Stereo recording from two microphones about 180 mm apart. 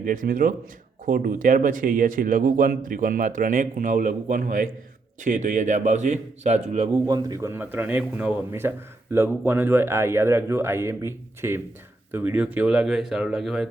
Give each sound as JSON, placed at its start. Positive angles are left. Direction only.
{"t": 0.0, "sound": "a man's voice", "side_deg": -50}
{"t": 7.0, "sound": "a man's voice", "side_deg": -20}